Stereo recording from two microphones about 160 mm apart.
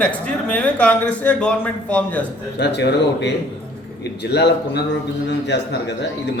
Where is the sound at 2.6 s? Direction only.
90° left.